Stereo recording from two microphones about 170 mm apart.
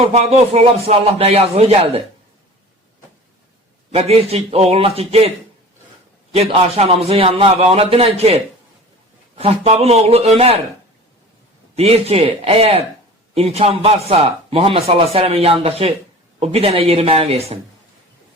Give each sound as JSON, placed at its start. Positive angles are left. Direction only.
{"t": 0.0, "sound": "speech", "side_deg": -40}
{"t": 3.9, "sound": "speech", "side_deg": -35}
{"t": 6.3, "sound": "speech", "side_deg": -35}
{"t": 9.4, "sound": "speech", "side_deg": -35}
{"t": 11.8, "sound": "speech", "side_deg": -35}